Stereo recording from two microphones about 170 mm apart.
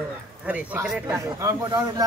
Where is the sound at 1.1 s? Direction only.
20° right (ahead or behind).